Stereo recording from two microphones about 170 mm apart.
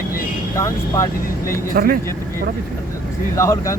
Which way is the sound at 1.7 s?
60° right (ahead or behind).